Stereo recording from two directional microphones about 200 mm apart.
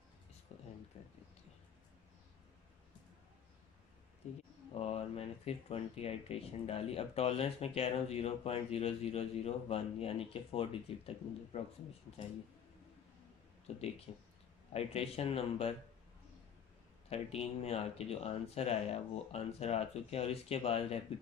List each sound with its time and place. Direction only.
0.5 s a sound: 35° left (ahead or behind)
1.0 s speech: 35° left (ahead or behind)
4.2 s speech: 35° left (ahead or behind)
13.7 s speech: 30° left (ahead or behind)
17.1 s speech: 30° left (ahead or behind)